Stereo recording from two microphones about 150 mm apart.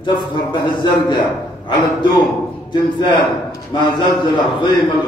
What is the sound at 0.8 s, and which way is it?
A man's voice, 30° left (ahead or behind).